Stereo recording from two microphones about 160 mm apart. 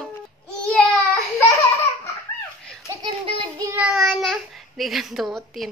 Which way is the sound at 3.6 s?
15° right (ahead or behind).